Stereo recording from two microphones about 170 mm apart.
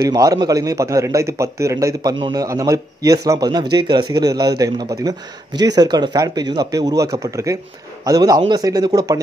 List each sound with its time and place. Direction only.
0.0 s speech: 20° right (ahead or behind)